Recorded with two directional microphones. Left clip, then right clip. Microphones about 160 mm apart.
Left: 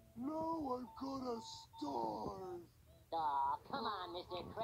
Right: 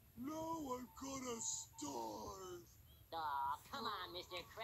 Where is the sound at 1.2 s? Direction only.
5° left (ahead or behind).